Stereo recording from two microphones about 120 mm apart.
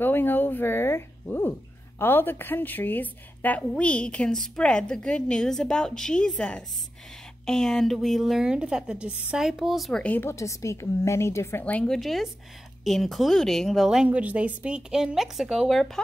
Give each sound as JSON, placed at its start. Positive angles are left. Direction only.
{"t": 0.0, "sound": "a woman's voice", "side_deg": 15}
{"t": 10.0, "sound": "a woman's voice", "side_deg": 15}
{"t": 10.3, "sound": "a woman's voice", "side_deg": 25}
{"t": 11.6, "sound": "speech", "side_deg": 10}